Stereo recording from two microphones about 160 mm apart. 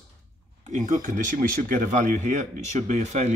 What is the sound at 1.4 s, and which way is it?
Speech, 60° right (ahead or behind).